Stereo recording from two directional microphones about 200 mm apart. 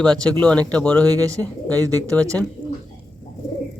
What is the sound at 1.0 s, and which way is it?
Speech, 20° right (ahead or behind).